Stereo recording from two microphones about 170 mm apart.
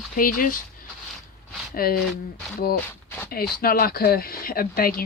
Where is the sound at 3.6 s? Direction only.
60° left (ahead or behind).